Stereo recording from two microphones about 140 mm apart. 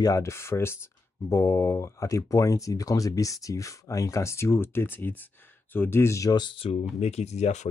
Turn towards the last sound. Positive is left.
turn(degrees=50)  # may be behind; listen again after turning